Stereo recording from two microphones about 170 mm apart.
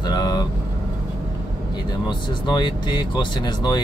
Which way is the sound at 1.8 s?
25° left (ahead or behind).